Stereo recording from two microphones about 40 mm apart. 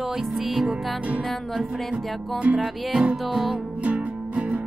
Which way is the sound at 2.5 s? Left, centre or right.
Centre.